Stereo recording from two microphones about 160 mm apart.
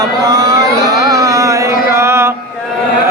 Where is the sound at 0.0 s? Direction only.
25° right (ahead or behind).